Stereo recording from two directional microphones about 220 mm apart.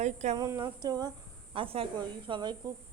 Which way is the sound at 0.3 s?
20° right (ahead or behind).